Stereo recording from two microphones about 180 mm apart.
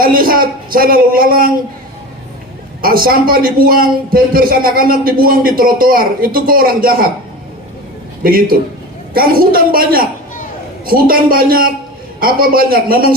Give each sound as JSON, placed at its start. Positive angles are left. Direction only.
{"t": 0.0, "sound": "speech", "side_deg": -55}
{"t": 2.8, "sound": "a man's voice", "side_deg": -55}
{"t": 8.2, "sound": "a man's voice", "side_deg": -55}